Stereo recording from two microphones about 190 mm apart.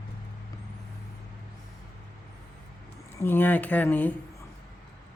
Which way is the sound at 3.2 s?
10° left (ahead or behind).